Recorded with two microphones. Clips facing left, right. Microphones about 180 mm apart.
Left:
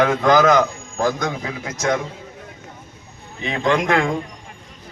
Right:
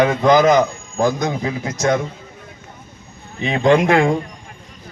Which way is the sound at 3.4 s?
20° right (ahead or behind).